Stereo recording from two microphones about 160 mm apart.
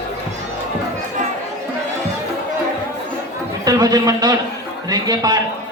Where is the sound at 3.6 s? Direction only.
25° right (ahead or behind).